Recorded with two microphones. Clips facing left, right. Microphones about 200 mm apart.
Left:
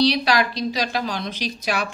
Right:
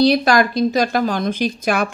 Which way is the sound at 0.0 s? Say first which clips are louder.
Right 5 dB; 50° right (ahead or behind).